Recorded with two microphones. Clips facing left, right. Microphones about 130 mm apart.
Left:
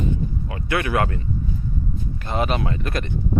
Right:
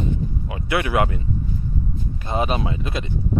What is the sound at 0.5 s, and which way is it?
Speech, 15° right (ahead or behind).